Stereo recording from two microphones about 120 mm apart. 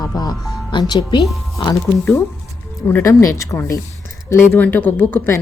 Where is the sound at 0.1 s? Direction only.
30° left (ahead or behind).